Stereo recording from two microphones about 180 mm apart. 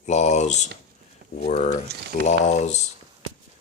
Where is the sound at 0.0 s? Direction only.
40° left (ahead or behind).